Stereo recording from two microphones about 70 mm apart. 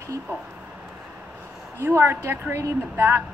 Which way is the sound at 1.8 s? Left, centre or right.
Right.